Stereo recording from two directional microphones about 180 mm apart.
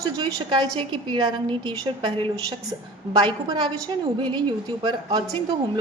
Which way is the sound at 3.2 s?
25° right (ahead or behind).